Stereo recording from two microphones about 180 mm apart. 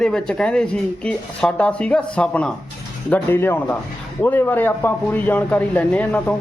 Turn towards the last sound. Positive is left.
turn(degrees=5)  # may be behind; listen again after turning